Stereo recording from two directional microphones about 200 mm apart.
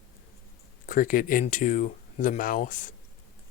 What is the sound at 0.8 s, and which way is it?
Speech, 40° left (ahead or behind).